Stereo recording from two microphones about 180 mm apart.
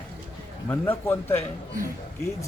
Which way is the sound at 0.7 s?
10° left (ahead or behind).